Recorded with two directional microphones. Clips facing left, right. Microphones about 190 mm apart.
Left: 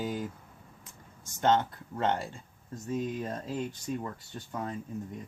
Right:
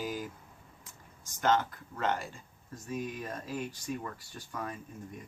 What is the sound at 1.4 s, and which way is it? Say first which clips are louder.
Speech: left 2 dB; 25° left (ahead or behind).